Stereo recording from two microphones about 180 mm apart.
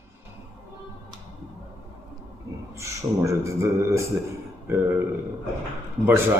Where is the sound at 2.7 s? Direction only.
15° right (ahead or behind).